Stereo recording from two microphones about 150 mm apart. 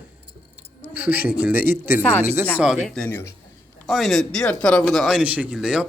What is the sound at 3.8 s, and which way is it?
Speech, centre (ahead or behind).